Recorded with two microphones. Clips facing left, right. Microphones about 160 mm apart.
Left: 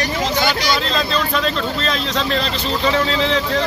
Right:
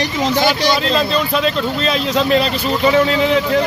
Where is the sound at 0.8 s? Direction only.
5° right (ahead or behind).